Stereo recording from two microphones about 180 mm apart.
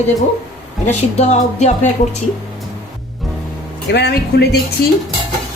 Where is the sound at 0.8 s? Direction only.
35° left (ahead or behind).